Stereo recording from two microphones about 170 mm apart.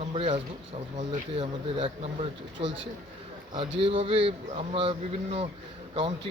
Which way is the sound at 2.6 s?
90° right.